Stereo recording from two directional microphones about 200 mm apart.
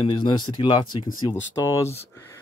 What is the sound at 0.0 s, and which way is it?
Speech, 25° left (ahead or behind).